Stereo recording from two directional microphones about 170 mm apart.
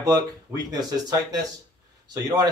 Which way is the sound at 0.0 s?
20° right (ahead or behind).